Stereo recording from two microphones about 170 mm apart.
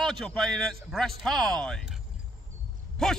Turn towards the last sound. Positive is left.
turn(degrees=5)  # may be behind; listen again after turning